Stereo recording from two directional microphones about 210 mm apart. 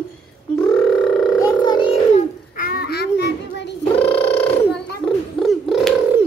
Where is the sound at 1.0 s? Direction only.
Centre (ahead or behind).